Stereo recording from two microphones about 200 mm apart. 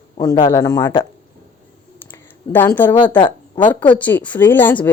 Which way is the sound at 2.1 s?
10° left (ahead or behind).